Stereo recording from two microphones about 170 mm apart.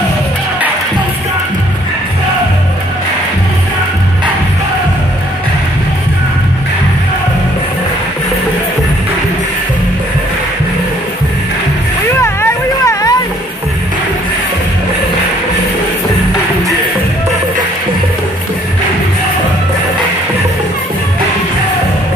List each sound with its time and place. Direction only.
12.1 s hubbub: 15° left (ahead or behind)